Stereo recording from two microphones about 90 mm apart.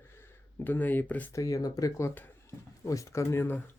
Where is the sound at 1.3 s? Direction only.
40° left (ahead or behind).